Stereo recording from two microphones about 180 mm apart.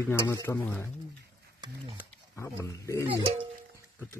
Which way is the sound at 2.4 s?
15° left (ahead or behind).